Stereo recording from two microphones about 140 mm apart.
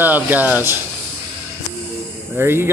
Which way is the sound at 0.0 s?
10° right (ahead or behind).